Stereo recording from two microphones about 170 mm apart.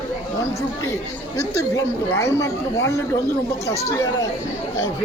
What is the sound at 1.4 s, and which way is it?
A woman's voice, 20° left (ahead or behind).